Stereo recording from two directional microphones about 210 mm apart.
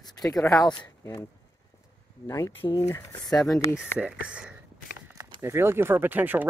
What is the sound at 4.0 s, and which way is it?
Speech, 5° right (ahead or behind).